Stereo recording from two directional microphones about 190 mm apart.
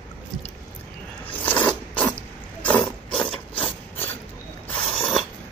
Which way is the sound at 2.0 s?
5° left (ahead or behind).